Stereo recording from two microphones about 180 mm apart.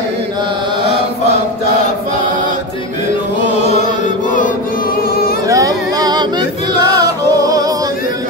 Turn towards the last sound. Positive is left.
turn(degrees=-20)  # may be behind; listen again after turning